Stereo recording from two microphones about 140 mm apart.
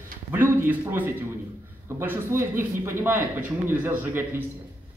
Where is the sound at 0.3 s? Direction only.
15° right (ahead or behind).